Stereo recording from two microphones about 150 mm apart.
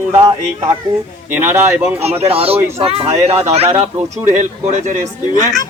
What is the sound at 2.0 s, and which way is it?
Speech, 40° right (ahead or behind).